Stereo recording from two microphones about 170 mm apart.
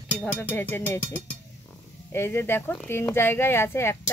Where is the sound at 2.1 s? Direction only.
15° left (ahead or behind).